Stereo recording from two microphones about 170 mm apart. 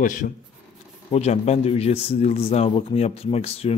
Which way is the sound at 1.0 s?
40° left (ahead or behind).